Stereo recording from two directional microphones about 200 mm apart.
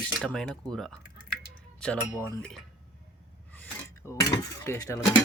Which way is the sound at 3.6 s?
5° left (ahead or behind).